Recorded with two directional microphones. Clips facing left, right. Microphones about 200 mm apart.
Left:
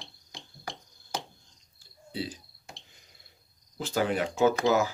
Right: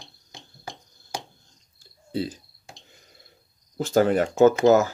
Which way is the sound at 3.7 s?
45° right (ahead or behind).